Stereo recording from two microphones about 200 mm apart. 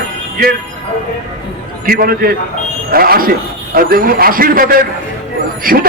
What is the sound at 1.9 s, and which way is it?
A man's voice, 50° right (ahead or behind).